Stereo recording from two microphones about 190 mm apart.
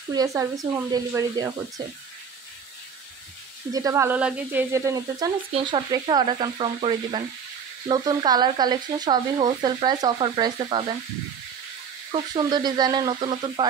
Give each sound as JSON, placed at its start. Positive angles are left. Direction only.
{"t": 0.1, "sound": "speech", "side_deg": -20}
{"t": 3.7, "sound": "speech", "side_deg": -15}
{"t": 12.1, "sound": "speech", "side_deg": -25}